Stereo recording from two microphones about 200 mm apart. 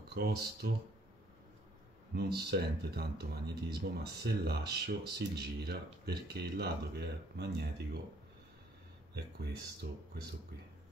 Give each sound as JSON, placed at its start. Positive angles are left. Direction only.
{"t": 0.1, "sound": "speech", "side_deg": -50}
{"t": 2.1, "sound": "speech", "side_deg": -55}
{"t": 9.1, "sound": "speech", "side_deg": -55}